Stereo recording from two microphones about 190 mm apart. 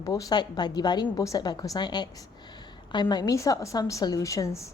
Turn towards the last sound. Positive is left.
turn(degrees=15)  # may be behind; listen again after turning